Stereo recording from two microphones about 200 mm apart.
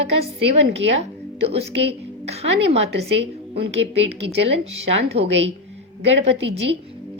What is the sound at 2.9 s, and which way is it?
A woman's voice, 60° right (ahead or behind).